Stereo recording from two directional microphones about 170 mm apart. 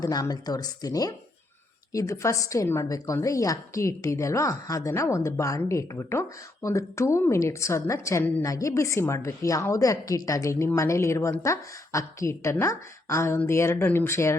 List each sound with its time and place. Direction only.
0.0 s a woman's voice: 20° left (ahead or behind)